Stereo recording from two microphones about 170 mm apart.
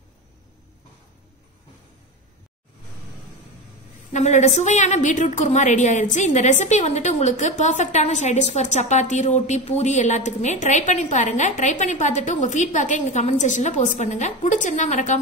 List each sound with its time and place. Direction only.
4.1 s a woman's voice: 45° left (ahead or behind)